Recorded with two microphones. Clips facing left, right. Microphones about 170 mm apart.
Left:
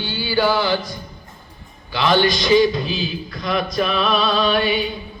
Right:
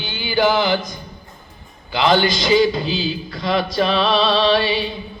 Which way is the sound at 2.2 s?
30° right (ahead or behind).